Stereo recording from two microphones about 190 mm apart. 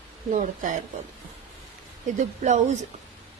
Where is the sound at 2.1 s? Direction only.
40° right (ahead or behind).